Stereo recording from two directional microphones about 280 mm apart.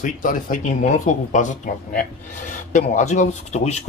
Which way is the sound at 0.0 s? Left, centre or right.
Left.